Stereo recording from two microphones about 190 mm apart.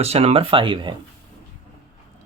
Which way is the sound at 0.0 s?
30° right (ahead or behind).